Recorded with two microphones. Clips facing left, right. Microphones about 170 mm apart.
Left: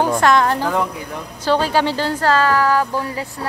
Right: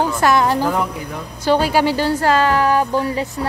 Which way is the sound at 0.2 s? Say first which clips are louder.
Even; 10° right (ahead or behind).